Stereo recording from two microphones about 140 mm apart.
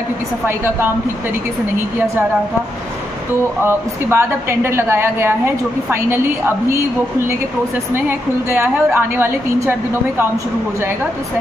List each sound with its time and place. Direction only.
3.6 s a woman's voice: 20° right (ahead or behind)
8.5 s a woman's voice: 15° right (ahead or behind)